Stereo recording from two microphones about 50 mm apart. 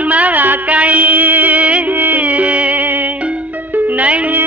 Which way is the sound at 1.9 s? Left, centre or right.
Right.